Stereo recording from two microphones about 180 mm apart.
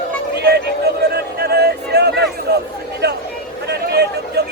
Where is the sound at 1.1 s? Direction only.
60° right (ahead or behind).